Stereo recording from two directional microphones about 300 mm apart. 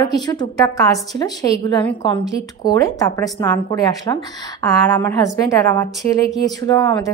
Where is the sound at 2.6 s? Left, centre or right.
Centre.